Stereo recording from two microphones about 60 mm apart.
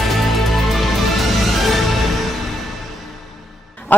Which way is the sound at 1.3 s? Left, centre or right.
Centre.